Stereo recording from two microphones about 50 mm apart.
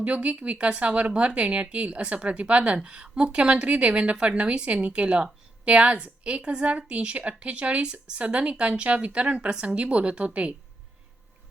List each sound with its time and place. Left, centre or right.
0.0 s speech: right